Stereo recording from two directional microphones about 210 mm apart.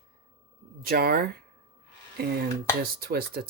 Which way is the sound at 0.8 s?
45° right (ahead or behind).